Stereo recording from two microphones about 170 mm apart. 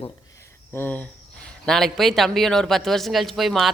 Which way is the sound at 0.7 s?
10° left (ahead or behind).